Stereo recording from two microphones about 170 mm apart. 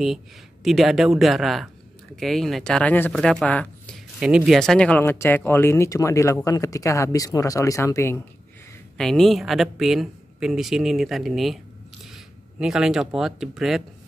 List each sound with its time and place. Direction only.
0.7 s speech: centre (ahead or behind)
4.2 s speech: 5° right (ahead or behind); by 8.2 s 15° left (ahead or behind)
8.9 s speech: 5° left (ahead or behind)